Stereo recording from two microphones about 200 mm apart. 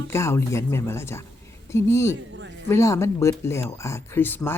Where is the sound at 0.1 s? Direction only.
15° left (ahead or behind).